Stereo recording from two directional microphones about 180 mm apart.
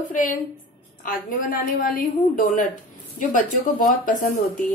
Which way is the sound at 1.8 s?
50° left (ahead or behind).